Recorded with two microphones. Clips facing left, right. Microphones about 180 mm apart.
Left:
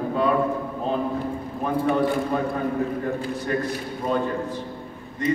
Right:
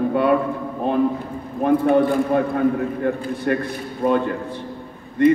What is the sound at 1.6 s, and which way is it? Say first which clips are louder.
A man's voice: right 6 dB; 60° right (ahead or behind).